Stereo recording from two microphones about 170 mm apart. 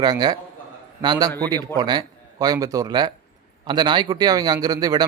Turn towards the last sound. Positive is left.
turn(degrees=-20)  # may be behind; listen again after turning